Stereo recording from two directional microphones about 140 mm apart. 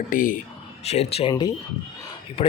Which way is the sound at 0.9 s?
45° left (ahead or behind).